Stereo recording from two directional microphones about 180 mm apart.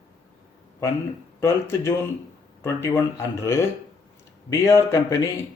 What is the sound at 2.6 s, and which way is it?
Speech, 15° left (ahead or behind).